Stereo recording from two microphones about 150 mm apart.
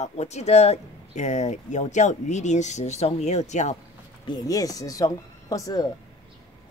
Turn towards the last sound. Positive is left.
turn(degrees=25)  # may be behind; listen again after turning